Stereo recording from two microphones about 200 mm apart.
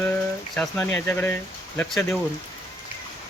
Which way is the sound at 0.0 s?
5° left (ahead or behind).